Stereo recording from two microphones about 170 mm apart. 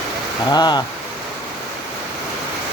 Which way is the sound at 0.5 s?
25° left (ahead or behind).